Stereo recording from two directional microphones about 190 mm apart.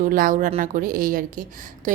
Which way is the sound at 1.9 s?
40° right (ahead or behind).